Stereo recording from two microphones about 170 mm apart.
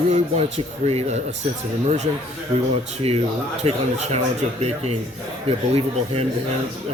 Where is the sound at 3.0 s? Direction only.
35° right (ahead or behind).